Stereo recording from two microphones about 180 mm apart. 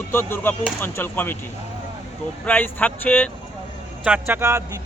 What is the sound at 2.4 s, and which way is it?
Speech, 10° left (ahead or behind).